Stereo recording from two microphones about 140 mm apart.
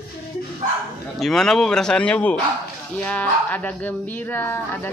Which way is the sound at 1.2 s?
5° left (ahead or behind).